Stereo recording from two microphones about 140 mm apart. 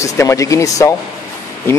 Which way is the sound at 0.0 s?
20° left (ahead or behind).